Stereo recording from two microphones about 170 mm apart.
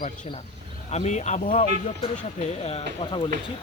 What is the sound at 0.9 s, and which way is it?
Speech, 40° left (ahead or behind).